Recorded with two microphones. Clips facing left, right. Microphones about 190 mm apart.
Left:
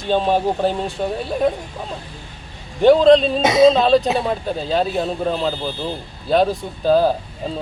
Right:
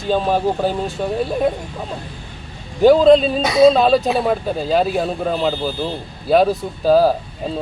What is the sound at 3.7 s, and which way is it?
A man's voice, 5° right (ahead or behind).